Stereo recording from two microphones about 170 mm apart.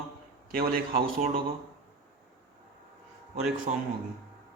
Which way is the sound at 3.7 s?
45° right (ahead or behind).